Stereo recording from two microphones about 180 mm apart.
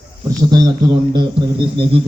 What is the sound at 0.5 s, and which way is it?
Speech, 25° right (ahead or behind).